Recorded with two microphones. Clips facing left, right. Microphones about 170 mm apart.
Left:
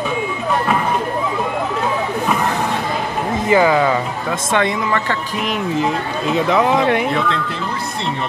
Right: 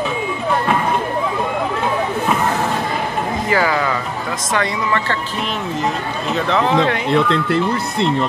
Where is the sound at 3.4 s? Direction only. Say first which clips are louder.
Left 6 dB; 20° left (ahead or behind).